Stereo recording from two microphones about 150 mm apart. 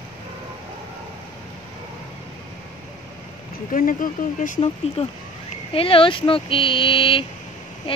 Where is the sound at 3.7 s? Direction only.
65° left (ahead or behind).